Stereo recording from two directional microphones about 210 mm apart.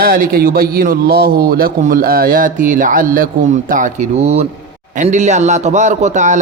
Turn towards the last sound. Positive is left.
turn(degrees=-35)  # may be behind; listen again after turning